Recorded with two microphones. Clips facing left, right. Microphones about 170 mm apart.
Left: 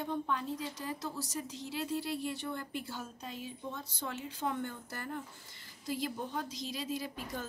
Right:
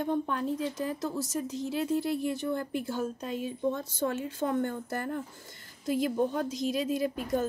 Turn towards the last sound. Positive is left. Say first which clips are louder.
# right 10 dB
turn(degrees=-50)  # may be behind; listen again after turning